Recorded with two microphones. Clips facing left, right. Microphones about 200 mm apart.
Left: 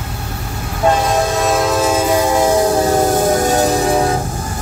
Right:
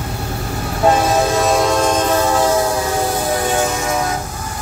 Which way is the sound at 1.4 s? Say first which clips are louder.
Even; centre (ahead or behind).